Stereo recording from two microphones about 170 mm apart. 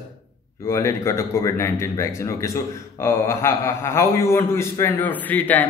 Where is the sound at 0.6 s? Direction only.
15° left (ahead or behind).